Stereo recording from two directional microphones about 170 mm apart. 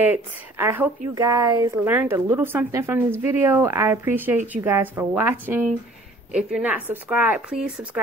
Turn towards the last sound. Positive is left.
turn(degrees=-5)  # may be behind; listen again after turning